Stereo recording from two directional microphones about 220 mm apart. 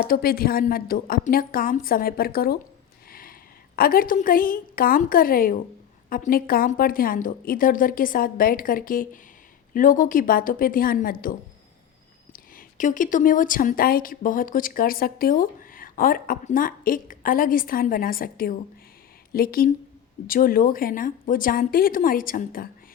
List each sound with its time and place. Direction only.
0.1 s a woman's voice: 40° left (ahead or behind)
3.1 s a sound: 40° left (ahead or behind)
3.8 s a woman's voice: 40° left (ahead or behind)